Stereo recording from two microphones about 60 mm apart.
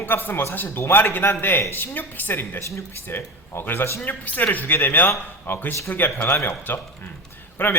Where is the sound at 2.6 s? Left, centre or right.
Left.